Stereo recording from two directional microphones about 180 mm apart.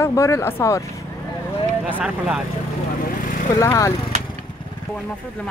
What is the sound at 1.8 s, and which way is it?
Speech, 5° right (ahead or behind).